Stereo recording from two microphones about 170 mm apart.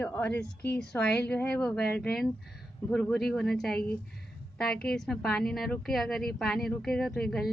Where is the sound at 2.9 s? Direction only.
5° left (ahead or behind).